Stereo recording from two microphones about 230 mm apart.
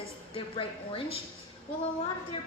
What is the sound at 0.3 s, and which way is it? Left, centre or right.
Speech, left.